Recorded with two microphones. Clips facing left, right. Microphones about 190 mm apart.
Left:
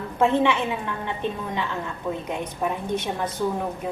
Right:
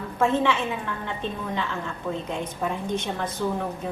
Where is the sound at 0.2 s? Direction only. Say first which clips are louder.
Left 2 dB; 15° left (ahead or behind).